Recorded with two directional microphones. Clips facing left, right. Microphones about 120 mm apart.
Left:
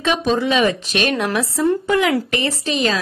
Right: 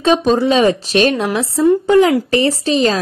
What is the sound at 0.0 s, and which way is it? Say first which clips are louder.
Speech: right 5 dB; 35° right (ahead or behind).